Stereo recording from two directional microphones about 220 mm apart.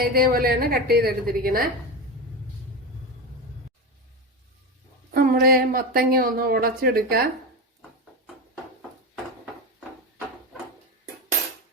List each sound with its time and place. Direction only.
0.0 s a woman's voice: 45° right (ahead or behind)
5.1 s speech: 40° right (ahead or behind)